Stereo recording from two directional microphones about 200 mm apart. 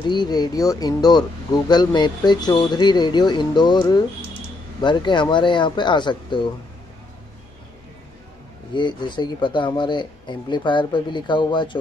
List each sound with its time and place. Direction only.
0.1 s speech: 20° left (ahead or behind)
8.7 s speech: 25° left (ahead or behind)